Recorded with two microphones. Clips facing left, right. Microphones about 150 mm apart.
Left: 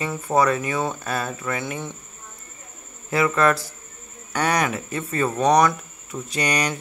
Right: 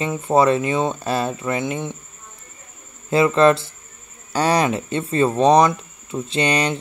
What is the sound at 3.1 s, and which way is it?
Speech, 25° right (ahead or behind).